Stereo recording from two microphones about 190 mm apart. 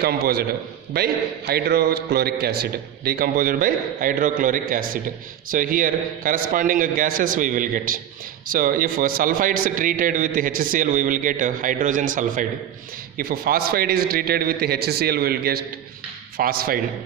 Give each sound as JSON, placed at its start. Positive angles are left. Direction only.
{"t": 0.0, "sound": "a man's voice", "side_deg": -55}